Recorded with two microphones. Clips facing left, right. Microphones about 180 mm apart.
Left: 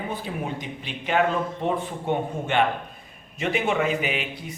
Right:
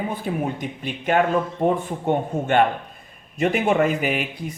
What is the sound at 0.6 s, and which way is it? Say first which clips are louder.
A man's voice: right 5 dB; 50° right (ahead or behind).